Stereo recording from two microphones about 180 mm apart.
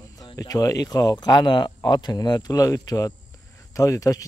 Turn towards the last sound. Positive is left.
turn(degrees=20)  # may be behind; listen again after turning